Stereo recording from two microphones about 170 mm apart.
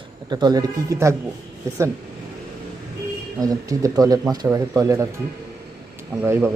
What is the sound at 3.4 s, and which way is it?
Speech, 20° right (ahead or behind).